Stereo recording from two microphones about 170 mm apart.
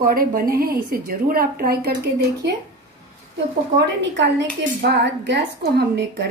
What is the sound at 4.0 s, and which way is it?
A woman's voice, 90° right.